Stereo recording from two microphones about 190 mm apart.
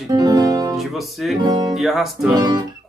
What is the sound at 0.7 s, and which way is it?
Speech, centre (ahead or behind).